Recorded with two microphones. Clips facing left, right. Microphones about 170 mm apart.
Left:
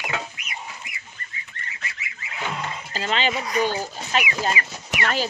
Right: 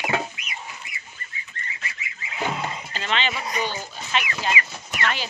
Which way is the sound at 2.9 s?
35° left (ahead or behind).